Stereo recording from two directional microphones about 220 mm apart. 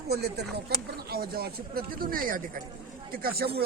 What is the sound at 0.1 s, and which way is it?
Speech, 45° right (ahead or behind).